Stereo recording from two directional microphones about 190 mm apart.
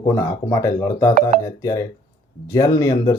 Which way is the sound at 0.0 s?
15° left (ahead or behind).